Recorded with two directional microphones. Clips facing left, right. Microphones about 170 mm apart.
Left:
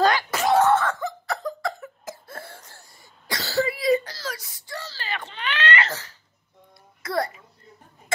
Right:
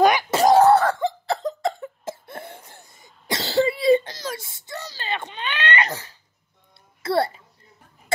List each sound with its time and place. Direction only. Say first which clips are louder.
0.0 s cough: right 4 dB; 20° right (ahead or behind)
0.4 s cough: right 5 dB; 35° right (ahead or behind); by 6.1 s 15° right (ahead or behind)
7.0 s a sound: right 5 dB; 30° right (ahead or behind)